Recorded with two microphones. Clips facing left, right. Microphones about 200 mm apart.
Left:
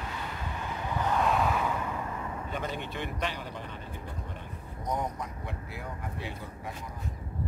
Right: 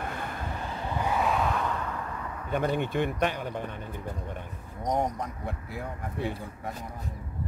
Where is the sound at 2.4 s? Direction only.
55° right (ahead or behind).